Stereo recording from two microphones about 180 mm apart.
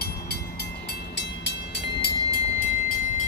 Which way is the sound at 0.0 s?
65° left (ahead or behind).